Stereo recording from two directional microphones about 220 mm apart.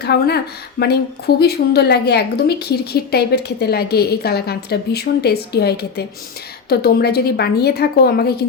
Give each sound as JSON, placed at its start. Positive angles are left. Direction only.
{"t": 0.0, "sound": "a woman's voice", "side_deg": 45}